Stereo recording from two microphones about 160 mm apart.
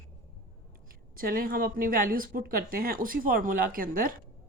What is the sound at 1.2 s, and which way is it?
A woman's voice, 65° right (ahead or behind).